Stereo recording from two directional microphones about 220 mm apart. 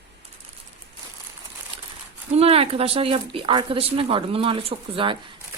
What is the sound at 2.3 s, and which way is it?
Speech, 25° right (ahead or behind).